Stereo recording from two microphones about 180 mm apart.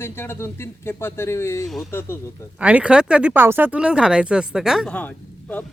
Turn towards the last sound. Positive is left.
turn(degrees=10)  # may be behind; listen again after turning